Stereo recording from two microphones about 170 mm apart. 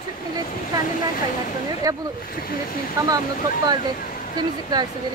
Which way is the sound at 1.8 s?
20° right (ahead or behind).